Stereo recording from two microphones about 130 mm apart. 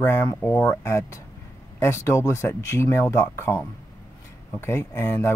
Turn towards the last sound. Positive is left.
turn(degrees=20)  # may be behind; listen again after turning